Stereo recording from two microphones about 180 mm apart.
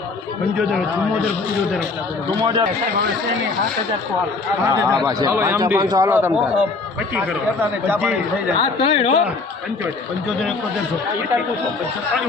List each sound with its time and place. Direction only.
2.4 s a man's voice: 25° right (ahead or behind)
4.7 s a man's voice: 15° right (ahead or behind)
8.5 s speech: 30° left (ahead or behind)